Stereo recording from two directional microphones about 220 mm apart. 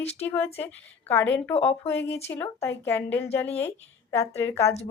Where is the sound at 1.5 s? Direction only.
25° left (ahead or behind).